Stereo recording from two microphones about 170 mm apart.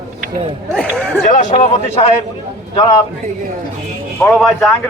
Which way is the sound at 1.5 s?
40° left (ahead or behind).